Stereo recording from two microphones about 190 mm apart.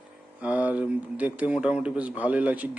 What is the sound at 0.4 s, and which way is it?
A man's voice, 10° right (ahead or behind).